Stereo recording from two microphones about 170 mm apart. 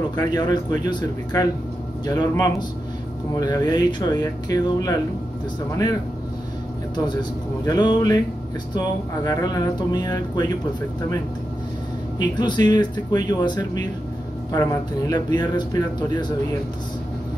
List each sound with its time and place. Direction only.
0.1 s speech: 25° left (ahead or behind)
7.1 s speech: 25° left (ahead or behind)
12.2 s speech: 25° left (ahead or behind)